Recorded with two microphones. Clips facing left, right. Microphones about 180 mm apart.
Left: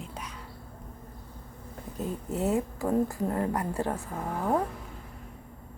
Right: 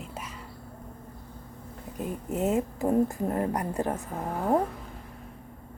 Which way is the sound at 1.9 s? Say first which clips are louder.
Right 1 dB; 20° right (ahead or behind).